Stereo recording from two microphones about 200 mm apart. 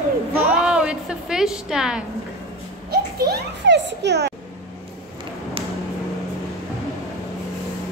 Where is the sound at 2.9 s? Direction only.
50° right (ahead or behind).